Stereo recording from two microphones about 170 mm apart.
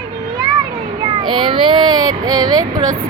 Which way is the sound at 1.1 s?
30° right (ahead or behind).